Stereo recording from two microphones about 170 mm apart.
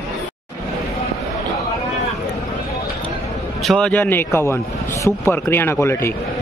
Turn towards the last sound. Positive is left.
turn(degrees=15)  # may be behind; listen again after turning